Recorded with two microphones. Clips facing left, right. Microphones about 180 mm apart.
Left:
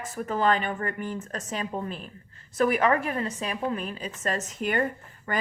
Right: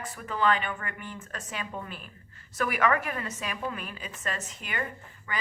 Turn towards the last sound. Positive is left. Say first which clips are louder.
# left 8 dB
turn(degrees=45)  # may be behind; listen again after turning